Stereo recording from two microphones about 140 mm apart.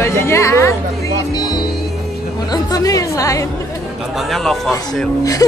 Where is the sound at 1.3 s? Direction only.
30° left (ahead or behind).